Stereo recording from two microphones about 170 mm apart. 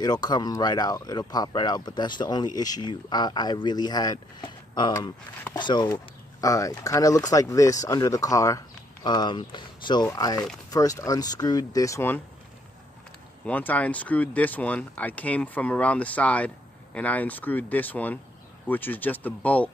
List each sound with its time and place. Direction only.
0.0 s speech: 25° left (ahead or behind)
13.5 s speech: 10° left (ahead or behind)